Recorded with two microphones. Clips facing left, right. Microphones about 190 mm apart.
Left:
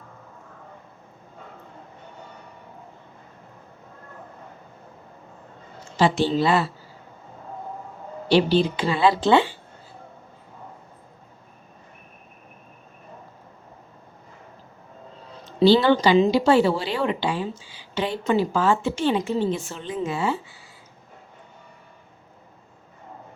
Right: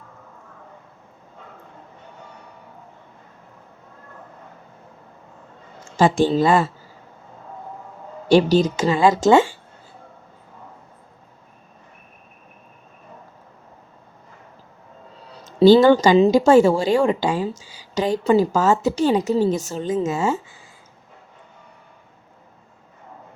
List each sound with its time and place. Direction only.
5.8 s a woman's voice: 45° right (ahead or behind)
8.3 s a woman's voice: 45° right (ahead or behind)
15.4 s a woman's voice: 45° right (ahead or behind)